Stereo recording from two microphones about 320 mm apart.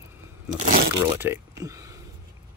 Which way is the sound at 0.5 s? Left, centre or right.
Right.